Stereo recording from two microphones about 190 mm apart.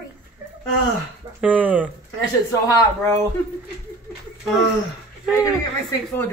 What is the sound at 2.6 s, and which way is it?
Speech, 20° left (ahead or behind).